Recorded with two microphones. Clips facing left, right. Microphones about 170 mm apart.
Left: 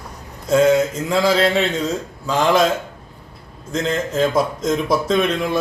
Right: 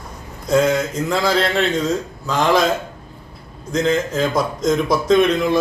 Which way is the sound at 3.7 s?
Centre (ahead or behind).